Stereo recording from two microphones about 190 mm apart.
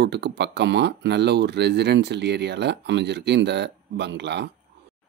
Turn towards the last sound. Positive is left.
turn(degrees=-65)  # may be behind; listen again after turning